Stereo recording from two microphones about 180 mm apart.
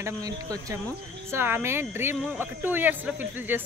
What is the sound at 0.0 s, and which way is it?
Speech, 20° right (ahead or behind).